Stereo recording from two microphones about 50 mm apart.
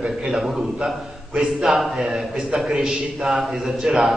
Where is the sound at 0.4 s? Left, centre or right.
Centre.